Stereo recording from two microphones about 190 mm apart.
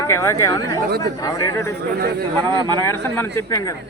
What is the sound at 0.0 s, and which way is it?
A man's voice, 15° left (ahead or behind).